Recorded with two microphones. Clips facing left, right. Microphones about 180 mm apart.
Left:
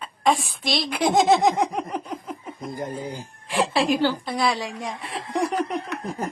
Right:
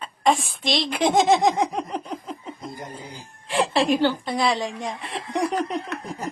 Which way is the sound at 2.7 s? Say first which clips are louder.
Left 6 dB; 50° left (ahead or behind).